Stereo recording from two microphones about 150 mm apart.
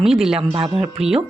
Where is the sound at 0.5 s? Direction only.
40° right (ahead or behind).